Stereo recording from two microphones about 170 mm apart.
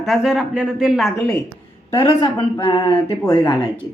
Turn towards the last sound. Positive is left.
turn(degrees=25)  # may be behind; listen again after turning